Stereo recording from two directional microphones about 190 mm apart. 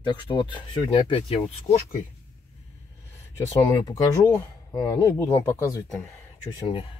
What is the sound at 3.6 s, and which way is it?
Speech, 20° left (ahead or behind).